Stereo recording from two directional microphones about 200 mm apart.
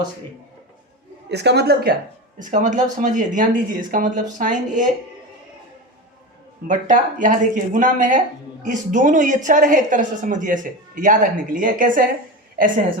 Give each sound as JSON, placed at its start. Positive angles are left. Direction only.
{"t": 1.3, "sound": "a woman's voice", "side_deg": -55}
{"t": 2.4, "sound": "speech", "side_deg": -40}
{"t": 6.7, "sound": "speech", "side_deg": -40}